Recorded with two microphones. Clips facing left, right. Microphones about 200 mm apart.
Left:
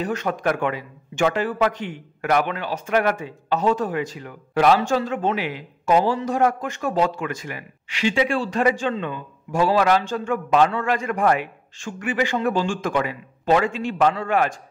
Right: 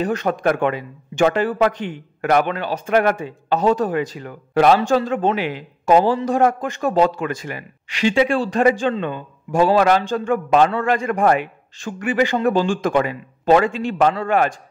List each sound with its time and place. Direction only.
0.0 s speech: 35° right (ahead or behind)